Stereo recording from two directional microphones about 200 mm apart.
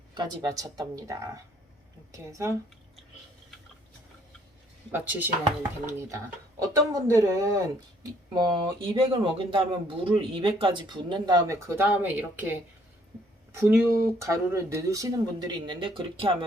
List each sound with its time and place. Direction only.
0.1 s speech: 20° right (ahead or behind)
4.9 s speech: 10° right (ahead or behind)
13.6 s speech: 10° right (ahead or behind)